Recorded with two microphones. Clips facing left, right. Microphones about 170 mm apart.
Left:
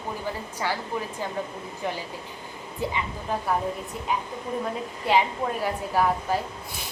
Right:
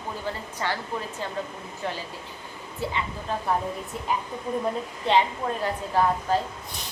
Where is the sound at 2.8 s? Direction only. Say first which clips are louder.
Left 1 dB; 15° left (ahead or behind).